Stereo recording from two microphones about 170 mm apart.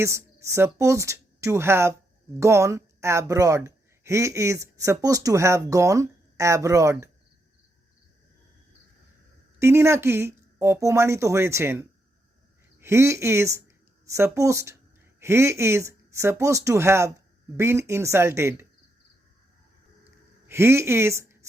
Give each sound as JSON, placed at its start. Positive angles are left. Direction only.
{"t": 0.0, "sound": "speech", "side_deg": -15}
{"t": 9.6, "sound": "speech", "side_deg": -15}
{"t": 20.5, "sound": "speech", "side_deg": -15}